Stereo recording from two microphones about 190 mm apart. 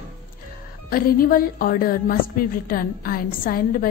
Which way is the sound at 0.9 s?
50° left (ahead or behind).